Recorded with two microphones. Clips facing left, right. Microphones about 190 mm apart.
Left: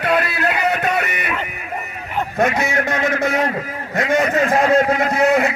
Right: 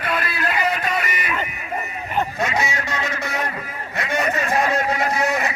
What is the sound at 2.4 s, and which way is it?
Speech, 55° left (ahead or behind).